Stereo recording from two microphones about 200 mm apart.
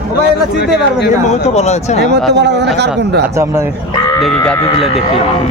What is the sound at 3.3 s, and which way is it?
Speech, 15° right (ahead or behind).